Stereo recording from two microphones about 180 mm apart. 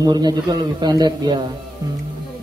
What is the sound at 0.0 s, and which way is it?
Speech, 20° right (ahead or behind).